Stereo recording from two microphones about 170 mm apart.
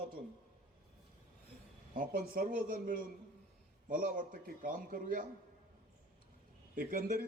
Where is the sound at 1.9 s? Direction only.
60° right (ahead or behind).